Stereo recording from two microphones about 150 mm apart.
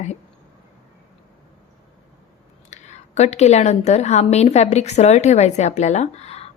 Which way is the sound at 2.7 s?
50° left (ahead or behind).